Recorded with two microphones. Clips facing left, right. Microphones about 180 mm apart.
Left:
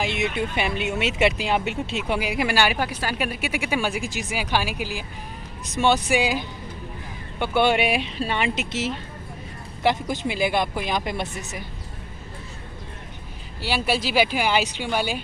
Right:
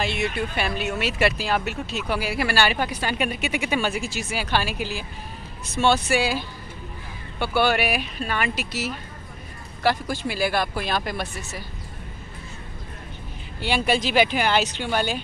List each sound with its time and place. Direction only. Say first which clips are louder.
0.0 s speech: left 1 dB; 20° left (ahead or behind)
13.6 s speech: right 2 dB; 5° left (ahead or behind)